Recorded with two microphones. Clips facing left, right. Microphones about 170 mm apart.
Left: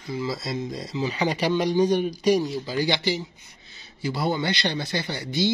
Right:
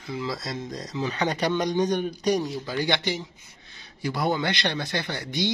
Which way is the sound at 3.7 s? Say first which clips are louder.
Left 1 dB; 55° right (ahead or behind).